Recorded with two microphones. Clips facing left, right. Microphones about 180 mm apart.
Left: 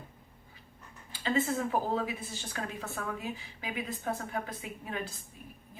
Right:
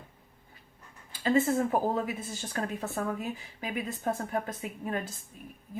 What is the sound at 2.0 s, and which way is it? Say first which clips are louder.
A woman's voice: right 3 dB; 45° right (ahead or behind).